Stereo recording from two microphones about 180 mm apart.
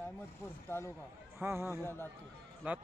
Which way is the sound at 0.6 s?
15° left (ahead or behind).